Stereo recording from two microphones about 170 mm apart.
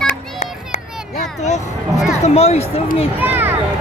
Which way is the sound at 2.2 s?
40° left (ahead or behind).